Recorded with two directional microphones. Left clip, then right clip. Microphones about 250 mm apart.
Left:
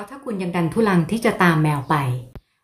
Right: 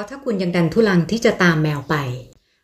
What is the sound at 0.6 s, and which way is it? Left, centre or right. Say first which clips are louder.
A woman's voice: right 2 dB; centre.